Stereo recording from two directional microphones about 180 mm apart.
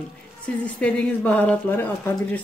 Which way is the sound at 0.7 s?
5° left (ahead or behind).